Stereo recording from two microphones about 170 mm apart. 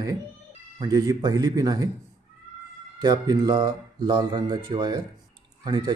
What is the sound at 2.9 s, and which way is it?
Speech, 25° right (ahead or behind).